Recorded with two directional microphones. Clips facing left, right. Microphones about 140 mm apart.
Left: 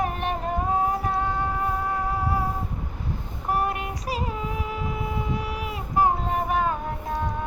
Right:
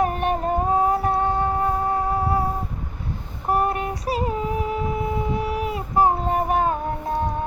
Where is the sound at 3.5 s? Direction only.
35° right (ahead or behind).